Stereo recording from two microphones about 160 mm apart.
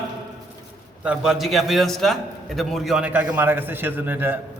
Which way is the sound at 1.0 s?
5° right (ahead or behind).